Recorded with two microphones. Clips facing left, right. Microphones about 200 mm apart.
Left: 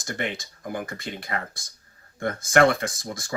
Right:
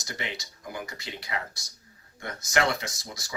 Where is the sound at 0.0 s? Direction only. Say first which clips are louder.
Left 6 dB; 50° left (ahead or behind).